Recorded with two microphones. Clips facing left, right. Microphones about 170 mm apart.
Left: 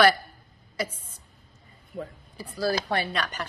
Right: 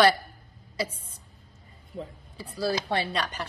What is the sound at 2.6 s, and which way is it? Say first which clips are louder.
Speech: left 1 dB; 25° right (ahead or behind).